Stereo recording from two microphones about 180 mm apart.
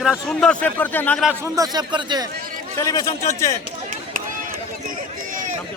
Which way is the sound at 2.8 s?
20° left (ahead or behind).